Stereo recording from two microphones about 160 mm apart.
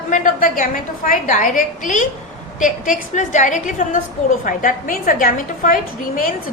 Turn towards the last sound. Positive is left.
turn(degrees=60)  # may be behind; listen again after turning